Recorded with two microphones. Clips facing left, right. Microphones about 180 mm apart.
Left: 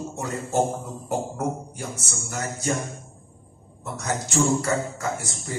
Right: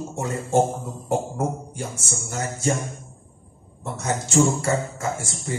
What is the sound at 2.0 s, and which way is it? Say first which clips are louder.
Speech: right 2 dB; 25° right (ahead or behind).